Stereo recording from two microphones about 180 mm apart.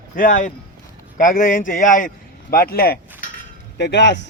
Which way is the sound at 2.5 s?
55° left (ahead or behind).